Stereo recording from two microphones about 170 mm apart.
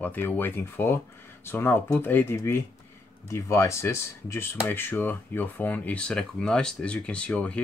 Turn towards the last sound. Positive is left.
turn(degrees=5)  # may be behind; listen again after turning